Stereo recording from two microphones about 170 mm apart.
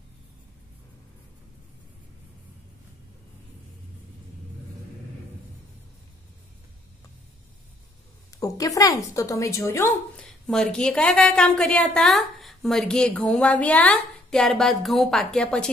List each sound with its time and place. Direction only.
8.4 s a woman's voice: 20° left (ahead or behind)
10.4 s a woman's voice: 5° left (ahead or behind)